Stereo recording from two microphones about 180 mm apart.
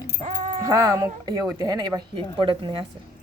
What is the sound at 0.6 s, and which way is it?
Speech, 20° right (ahead or behind).